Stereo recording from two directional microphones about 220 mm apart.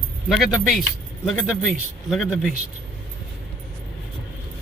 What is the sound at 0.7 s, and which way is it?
Speech, centre (ahead or behind).